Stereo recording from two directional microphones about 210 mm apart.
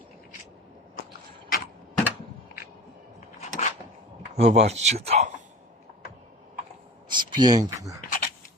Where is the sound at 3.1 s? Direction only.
35° left (ahead or behind).